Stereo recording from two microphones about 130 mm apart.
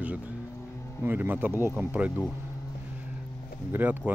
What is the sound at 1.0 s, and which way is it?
Speech, 15° right (ahead or behind).